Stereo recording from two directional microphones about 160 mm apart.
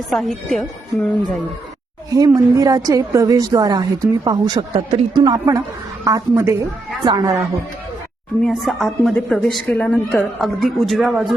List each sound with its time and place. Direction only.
0.1 s a woman's voice: centre (ahead or behind)
2.0 s speech: 25° right (ahead or behind)
8.4 s a woman's voice: centre (ahead or behind)